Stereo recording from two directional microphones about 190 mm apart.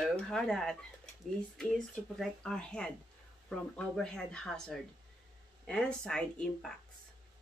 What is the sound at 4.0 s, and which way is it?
Speech, 5° left (ahead or behind).